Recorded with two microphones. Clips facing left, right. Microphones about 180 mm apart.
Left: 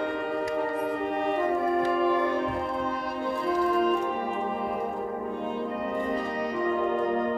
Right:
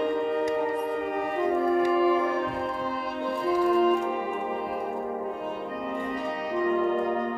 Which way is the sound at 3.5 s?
5° right (ahead or behind).